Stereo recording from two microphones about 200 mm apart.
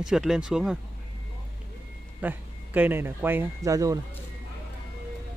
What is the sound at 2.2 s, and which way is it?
A man's voice, 10° right (ahead or behind).